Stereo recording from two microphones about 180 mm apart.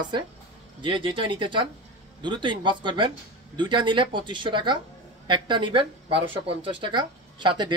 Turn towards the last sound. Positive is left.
turn(degrees=-25)  # may be behind; listen again after turning